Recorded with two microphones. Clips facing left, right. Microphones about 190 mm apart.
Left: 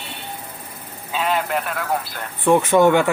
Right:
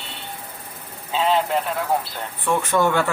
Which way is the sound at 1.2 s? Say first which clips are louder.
Right 2 dB; 25° right (ahead or behind).